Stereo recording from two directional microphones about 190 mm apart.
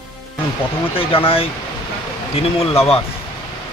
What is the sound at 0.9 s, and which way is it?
Speech, 30° left (ahead or behind).